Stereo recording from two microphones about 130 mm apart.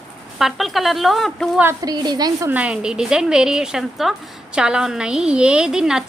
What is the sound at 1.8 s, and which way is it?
Speech, 30° right (ahead or behind).